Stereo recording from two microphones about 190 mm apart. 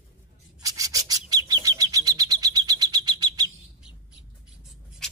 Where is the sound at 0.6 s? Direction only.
20° right (ahead or behind).